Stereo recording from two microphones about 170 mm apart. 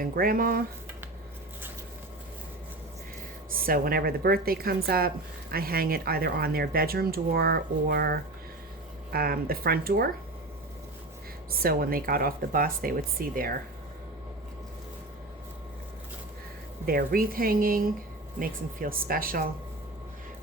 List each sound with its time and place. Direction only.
0.0 s speech: 60° right (ahead or behind)
3.7 s speech: 60° right (ahead or behind)
11.6 s speech: 60° right (ahead or behind)
16.8 s speech: 60° right (ahead or behind)